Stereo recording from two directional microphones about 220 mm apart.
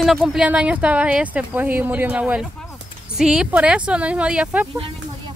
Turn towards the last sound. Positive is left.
turn(degrees=-5)  # may be behind; listen again after turning